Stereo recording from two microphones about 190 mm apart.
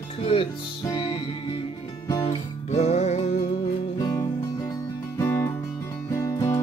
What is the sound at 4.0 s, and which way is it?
Music, 20° left (ahead or behind).